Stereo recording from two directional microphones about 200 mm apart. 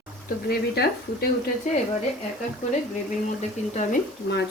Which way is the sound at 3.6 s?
35° left (ahead or behind).